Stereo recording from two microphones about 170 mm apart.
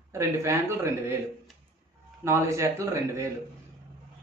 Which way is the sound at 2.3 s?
15° right (ahead or behind).